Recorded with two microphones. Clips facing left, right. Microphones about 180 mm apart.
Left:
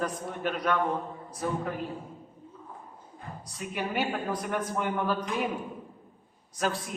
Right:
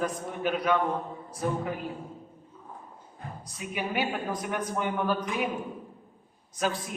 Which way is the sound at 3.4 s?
5° right (ahead or behind).